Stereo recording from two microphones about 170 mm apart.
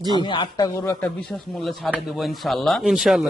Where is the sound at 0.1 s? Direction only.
25° left (ahead or behind).